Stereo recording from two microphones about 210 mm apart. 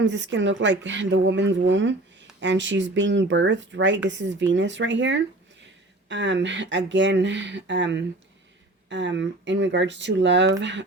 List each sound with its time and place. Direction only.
0.0 s speech: 60° right (ahead or behind)